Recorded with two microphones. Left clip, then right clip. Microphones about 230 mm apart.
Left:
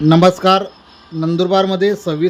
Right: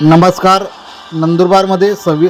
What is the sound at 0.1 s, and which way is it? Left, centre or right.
Speech, centre.